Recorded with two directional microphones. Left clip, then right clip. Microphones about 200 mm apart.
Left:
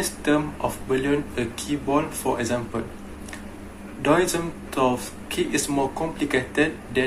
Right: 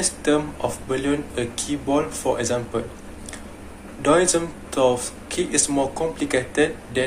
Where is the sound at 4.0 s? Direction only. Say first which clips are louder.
Right 3 dB; centre (ahead or behind).